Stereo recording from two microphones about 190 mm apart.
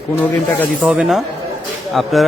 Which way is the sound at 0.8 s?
5° right (ahead or behind).